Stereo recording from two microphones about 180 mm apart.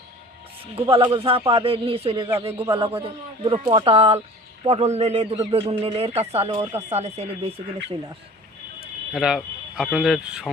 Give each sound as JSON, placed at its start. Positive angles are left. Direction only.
{"t": 0.8, "sound": "speech", "side_deg": -30}
{"t": 2.3, "sound": "speech", "side_deg": -15}
{"t": 2.7, "sound": "speech", "side_deg": -30}
{"t": 9.1, "sound": "speech", "side_deg": -5}